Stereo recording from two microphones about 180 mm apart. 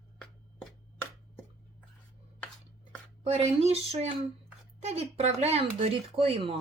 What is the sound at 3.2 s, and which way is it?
Speech, 35° right (ahead or behind).